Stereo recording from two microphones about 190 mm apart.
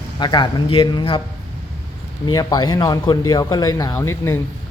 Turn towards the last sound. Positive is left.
turn(degrees=15)  # may be behind; listen again after turning